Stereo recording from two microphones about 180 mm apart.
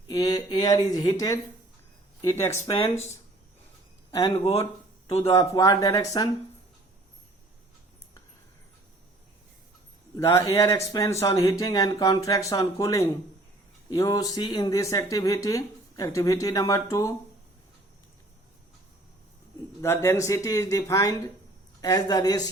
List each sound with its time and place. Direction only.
0.1 s speech: 20° left (ahead or behind)
4.1 s speech: 30° left (ahead or behind)
5.3 s speech: 20° left (ahead or behind)
10.2 s speech: 20° left (ahead or behind)
19.8 s speech: 15° left (ahead or behind)